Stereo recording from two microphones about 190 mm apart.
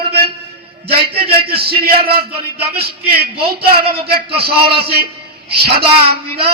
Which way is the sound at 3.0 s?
55° right (ahead or behind).